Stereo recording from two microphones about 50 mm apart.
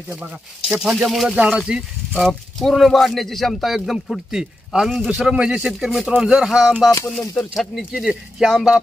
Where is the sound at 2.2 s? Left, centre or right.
Centre.